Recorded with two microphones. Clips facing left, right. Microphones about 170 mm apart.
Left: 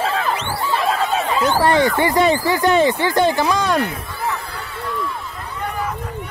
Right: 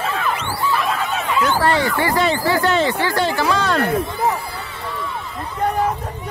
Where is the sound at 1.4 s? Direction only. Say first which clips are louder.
Left 2 dB; 15° left (ahead or behind).